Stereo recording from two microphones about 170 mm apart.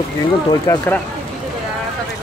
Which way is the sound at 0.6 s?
20° left (ahead or behind).